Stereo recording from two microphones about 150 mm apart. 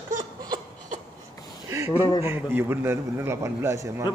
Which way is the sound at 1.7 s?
20° right (ahead or behind).